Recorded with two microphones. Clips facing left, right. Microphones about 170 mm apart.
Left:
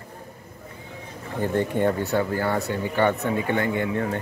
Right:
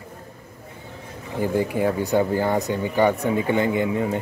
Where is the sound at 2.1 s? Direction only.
15° right (ahead or behind).